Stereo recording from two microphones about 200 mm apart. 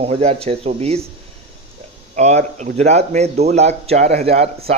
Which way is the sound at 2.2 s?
35° right (ahead or behind).